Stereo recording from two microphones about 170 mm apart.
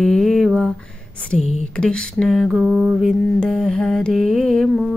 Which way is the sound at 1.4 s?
40° left (ahead or behind).